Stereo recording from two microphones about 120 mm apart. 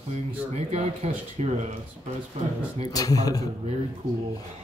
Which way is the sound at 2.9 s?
30° left (ahead or behind).